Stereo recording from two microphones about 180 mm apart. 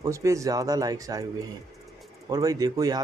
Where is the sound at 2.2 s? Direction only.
20° right (ahead or behind).